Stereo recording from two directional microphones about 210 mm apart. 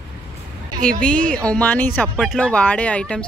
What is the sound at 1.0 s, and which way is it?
A woman's voice, 5° left (ahead or behind).